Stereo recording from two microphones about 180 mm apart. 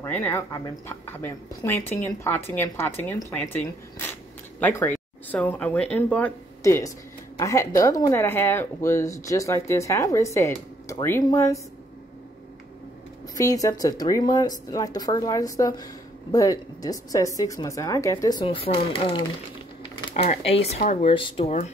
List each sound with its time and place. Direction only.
0.0 s speech: 10° left (ahead or behind)
13.4 s speech: 20° left (ahead or behind)
20.4 s speech: 35° left (ahead or behind)
20.8 s speech: 45° left (ahead or behind)
21.1 s speech: 30° left (ahead or behind)